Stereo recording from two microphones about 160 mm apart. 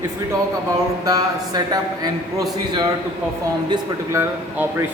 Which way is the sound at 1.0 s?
25° right (ahead or behind).